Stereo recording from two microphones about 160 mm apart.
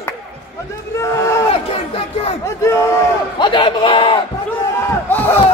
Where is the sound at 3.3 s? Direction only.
30° left (ahead or behind).